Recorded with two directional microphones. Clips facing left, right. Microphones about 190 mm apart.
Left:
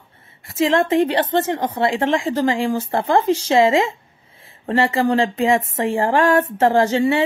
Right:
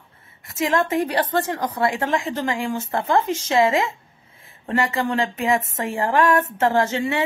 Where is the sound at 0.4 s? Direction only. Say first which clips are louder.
Left 4 dB; 30° left (ahead or behind).